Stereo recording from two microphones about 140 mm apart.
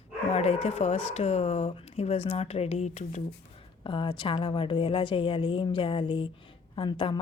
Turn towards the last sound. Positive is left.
turn(degrees=35)  # may be behind; listen again after turning